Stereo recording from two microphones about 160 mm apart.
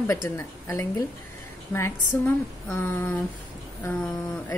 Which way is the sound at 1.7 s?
15° left (ahead or behind).